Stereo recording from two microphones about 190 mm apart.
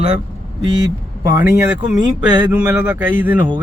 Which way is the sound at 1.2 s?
15° right (ahead or behind).